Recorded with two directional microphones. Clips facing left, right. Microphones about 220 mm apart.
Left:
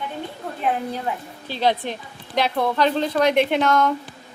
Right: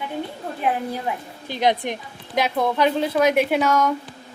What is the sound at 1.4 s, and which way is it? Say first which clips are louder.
A woman's voice: right 1 dB; 15° right (ahead or behind).